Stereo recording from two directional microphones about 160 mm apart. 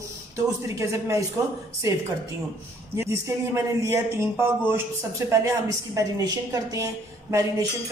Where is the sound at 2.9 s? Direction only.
15° right (ahead or behind).